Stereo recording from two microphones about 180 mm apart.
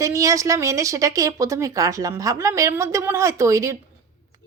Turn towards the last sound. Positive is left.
turn(degrees=-15)  # may be behind; listen again after turning